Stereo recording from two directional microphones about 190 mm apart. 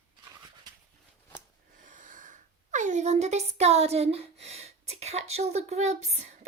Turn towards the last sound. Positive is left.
turn(degrees=-35)  # may be behind; listen again after turning